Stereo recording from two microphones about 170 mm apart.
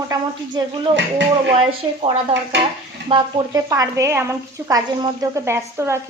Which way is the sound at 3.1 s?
30° right (ahead or behind).